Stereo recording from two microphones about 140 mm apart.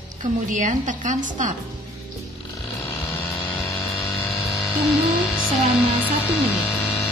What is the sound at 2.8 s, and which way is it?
Vehicle, 15° left (ahead or behind).